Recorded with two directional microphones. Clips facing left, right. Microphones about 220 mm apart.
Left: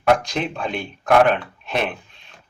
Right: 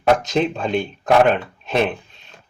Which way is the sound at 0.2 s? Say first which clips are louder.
Right 5 dB; 20° right (ahead or behind).